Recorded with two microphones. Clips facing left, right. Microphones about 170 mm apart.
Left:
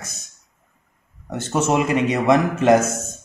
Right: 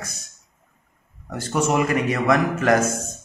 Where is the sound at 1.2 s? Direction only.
25° left (ahead or behind).